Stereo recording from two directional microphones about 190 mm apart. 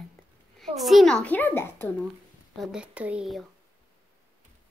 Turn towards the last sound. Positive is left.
turn(degrees=0)  # may be behind; listen again after turning